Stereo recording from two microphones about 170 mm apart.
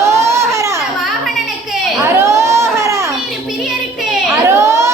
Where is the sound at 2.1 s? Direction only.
15° right (ahead or behind).